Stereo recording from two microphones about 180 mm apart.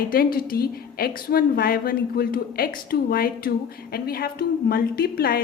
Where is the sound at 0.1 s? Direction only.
55° left (ahead or behind).